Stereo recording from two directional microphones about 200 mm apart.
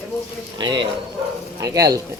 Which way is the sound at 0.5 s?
20° right (ahead or behind).